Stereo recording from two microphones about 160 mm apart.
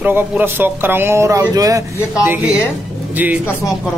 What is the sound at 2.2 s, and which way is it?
Speech, 10° right (ahead or behind).